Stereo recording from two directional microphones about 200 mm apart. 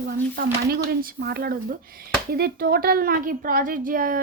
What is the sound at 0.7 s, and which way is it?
Speech, 50° right (ahead or behind).